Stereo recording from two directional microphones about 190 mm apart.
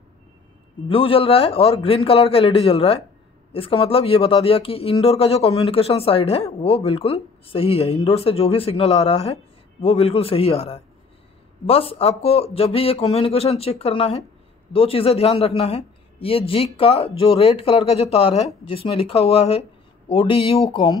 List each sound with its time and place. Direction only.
0.8 s speech: 30° left (ahead or behind)